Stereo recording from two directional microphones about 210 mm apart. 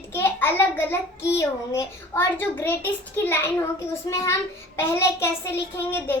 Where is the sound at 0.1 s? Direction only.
10° left (ahead or behind).